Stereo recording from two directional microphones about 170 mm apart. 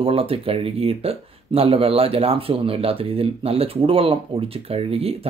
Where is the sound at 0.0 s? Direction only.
35° right (ahead or behind).